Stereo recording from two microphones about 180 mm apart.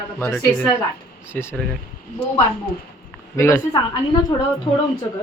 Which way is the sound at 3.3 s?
15° left (ahead or behind).